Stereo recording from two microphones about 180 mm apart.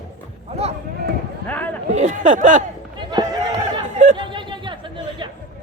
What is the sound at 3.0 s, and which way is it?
Chatter, 25° right (ahead or behind).